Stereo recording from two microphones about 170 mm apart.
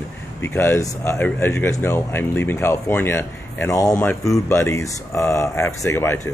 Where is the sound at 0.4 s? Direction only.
15° left (ahead or behind).